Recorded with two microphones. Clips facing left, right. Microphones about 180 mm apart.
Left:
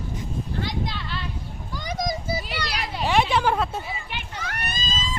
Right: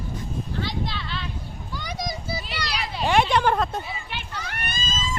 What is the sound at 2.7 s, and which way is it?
Children playing, 5° left (ahead or behind).